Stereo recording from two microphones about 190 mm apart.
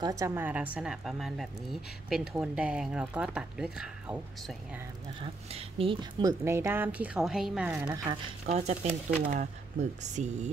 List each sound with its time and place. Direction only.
0.0 s a woman's voice: 15° right (ahead or behind)
5.2 s speech: 30° right (ahead or behind); by 7.9 s 5° right (ahead or behind)
7.9 s speech: 20° right (ahead or behind)
8.5 s speech: 35° right (ahead or behind)